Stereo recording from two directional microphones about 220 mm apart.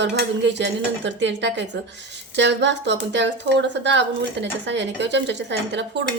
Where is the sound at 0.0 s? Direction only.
55° right (ahead or behind).